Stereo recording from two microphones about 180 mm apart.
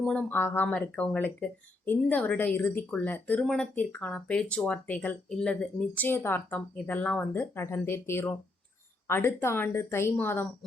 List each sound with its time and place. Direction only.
0.0 s speech: 5° left (ahead or behind)